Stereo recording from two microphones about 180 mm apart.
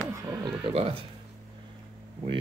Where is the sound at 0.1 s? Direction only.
15° right (ahead or behind).